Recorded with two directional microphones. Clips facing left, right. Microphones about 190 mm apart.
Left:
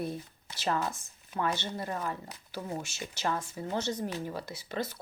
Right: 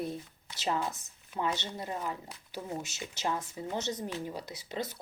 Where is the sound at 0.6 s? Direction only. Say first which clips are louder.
Left 1 dB; 20° right (ahead or behind).